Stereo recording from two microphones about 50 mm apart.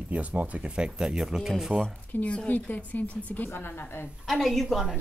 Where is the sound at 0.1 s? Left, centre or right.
Right; by 1.5 s centre.